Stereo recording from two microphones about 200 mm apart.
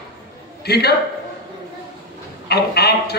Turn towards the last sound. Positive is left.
turn(degrees=55)  # may be behind; listen again after turning